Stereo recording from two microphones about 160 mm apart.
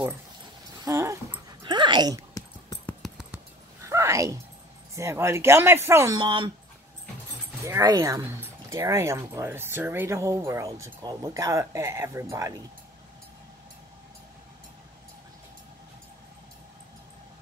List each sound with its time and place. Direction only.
0.8 s dog: 15° right (ahead or behind)
1.6 s dog: 30° right (ahead or behind)
2.9 s a sound: centre (ahead or behind)
3.8 s a sound: 20° right (ahead or behind)
4.9 s speech: 15° right (ahead or behind)
7.6 s speech: 20° right (ahead or behind)